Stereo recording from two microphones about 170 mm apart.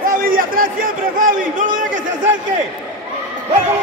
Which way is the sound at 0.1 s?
55° right (ahead or behind).